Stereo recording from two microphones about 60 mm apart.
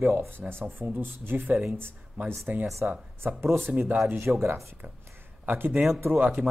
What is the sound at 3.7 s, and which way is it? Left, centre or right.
Speech, right.